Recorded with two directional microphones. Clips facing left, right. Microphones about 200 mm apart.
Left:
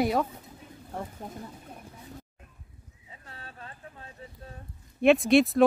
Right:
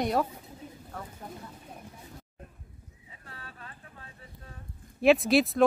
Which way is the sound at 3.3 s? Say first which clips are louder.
Left 2 dB; 30° left (ahead or behind).